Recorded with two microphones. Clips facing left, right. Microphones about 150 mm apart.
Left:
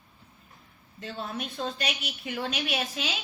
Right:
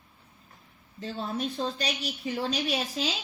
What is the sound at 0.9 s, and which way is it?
A woman's voice, 30° right (ahead or behind).